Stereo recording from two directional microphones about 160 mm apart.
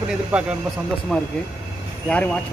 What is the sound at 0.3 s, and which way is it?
Speech, 5° right (ahead or behind).